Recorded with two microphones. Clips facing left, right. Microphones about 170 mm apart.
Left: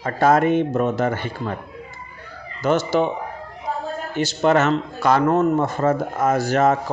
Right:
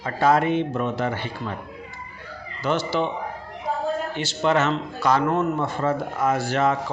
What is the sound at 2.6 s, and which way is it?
Speech, 45° left (ahead or behind).